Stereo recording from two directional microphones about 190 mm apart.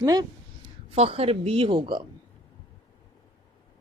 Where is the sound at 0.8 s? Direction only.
30° right (ahead or behind).